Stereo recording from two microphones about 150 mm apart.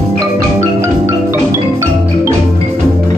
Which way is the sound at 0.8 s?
20° right (ahead or behind).